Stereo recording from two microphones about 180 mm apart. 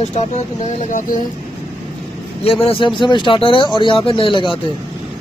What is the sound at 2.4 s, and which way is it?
Speech, 30° left (ahead or behind).